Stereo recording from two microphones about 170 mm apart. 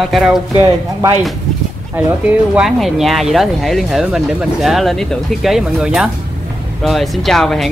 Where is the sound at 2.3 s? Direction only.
5° right (ahead or behind).